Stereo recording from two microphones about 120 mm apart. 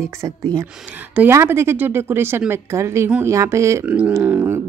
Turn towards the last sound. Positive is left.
turn(degrees=-15)  # may be behind; listen again after turning